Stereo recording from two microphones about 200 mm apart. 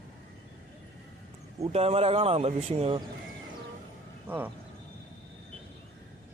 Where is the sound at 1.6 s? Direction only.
30° right (ahead or behind).